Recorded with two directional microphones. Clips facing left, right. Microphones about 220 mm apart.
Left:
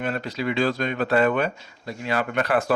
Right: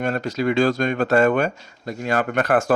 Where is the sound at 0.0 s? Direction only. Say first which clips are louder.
Right 5 dB; 45° right (ahead or behind).